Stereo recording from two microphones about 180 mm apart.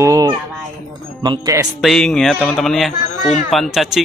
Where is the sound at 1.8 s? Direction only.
5° left (ahead or behind).